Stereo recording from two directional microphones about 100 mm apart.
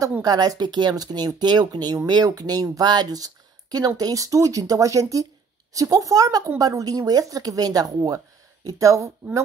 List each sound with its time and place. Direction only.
0.2 s speech: 40° right (ahead or behind)